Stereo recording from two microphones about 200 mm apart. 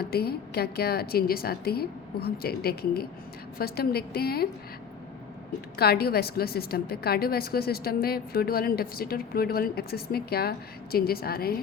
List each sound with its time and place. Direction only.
0.0 s a woman's voice: 50° left (ahead or behind)
5.7 s a woman's voice: 50° left (ahead or behind)